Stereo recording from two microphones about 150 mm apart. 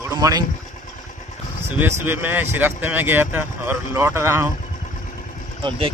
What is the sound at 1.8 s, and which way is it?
Speech, 15° right (ahead or behind).